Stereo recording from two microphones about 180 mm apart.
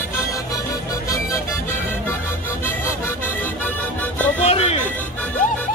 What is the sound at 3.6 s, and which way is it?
Music, 10° left (ahead or behind).